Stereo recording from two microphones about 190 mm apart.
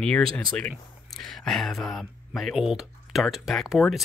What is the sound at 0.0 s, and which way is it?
Speech, 5° left (ahead or behind).